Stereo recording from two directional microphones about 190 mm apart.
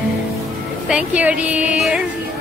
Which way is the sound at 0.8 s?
5° right (ahead or behind).